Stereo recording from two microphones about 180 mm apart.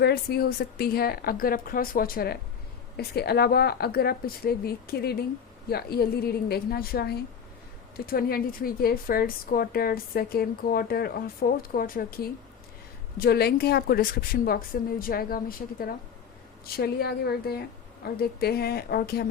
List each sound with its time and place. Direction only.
0.0 s a woman's voice: 60° left (ahead or behind)